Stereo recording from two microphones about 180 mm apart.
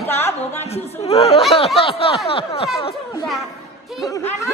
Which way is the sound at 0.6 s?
35° left (ahead or behind).